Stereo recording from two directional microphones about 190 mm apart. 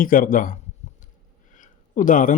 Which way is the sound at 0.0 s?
45° left (ahead or behind).